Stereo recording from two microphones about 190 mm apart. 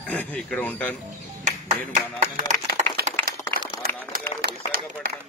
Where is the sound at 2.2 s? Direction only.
40° right (ahead or behind).